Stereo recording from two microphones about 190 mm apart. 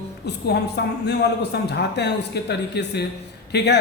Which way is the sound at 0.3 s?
60° left (ahead or behind).